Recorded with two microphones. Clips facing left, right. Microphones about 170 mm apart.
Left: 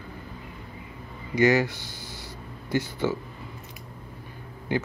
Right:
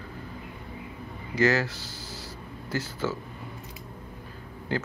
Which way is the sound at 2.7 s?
15° left (ahead or behind).